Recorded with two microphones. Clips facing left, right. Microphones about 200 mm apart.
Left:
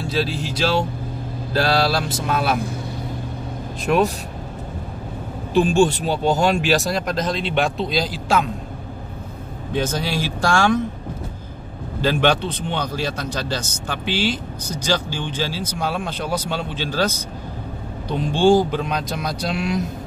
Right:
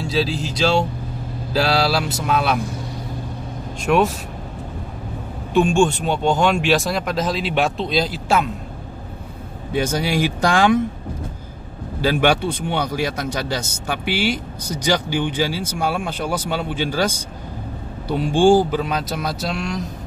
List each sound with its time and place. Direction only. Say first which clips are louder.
0.0 s speech: right 2 dB; centre (ahead or behind)
3.8 s speech: right 1 dB; centre (ahead or behind)
5.8 s speech: left 1 dB; 40° left (ahead or behind)
6.2 s speech: even; 5° left (ahead or behind)
9.7 s speech: right 2 dB; 10° right (ahead or behind)
12.0 s speech: right 1 dB; 10° right (ahead or behind)